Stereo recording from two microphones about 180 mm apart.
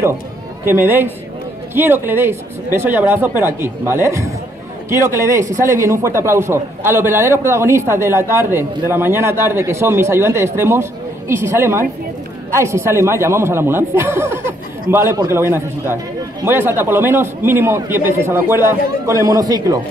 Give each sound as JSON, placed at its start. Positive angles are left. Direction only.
{"t": 0.7, "sound": "a man's voice", "side_deg": -10}